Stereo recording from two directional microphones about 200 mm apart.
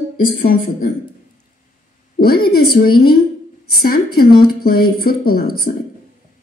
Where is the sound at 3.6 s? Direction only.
50° left (ahead or behind).